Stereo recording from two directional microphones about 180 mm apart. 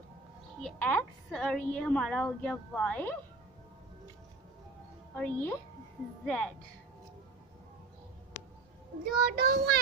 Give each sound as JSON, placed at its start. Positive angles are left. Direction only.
{"t": 0.6, "sound": "a woman's voice", "side_deg": 5}
{"t": 5.1, "sound": "a woman's voice", "side_deg": 10}
{"t": 9.0, "sound": "a child's voice", "side_deg": -55}